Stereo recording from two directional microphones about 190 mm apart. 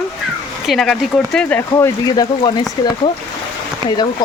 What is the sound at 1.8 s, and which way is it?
Speech, 15° left (ahead or behind).